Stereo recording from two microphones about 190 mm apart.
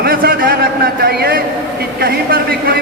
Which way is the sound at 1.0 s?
55° right (ahead or behind).